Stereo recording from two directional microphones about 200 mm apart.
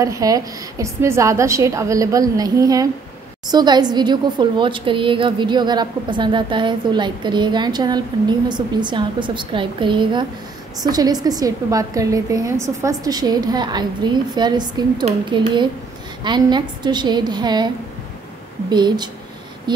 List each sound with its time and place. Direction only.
0.0 s a woman's voice: 15° right (ahead or behind)
18.7 s a woman's voice: 20° right (ahead or behind)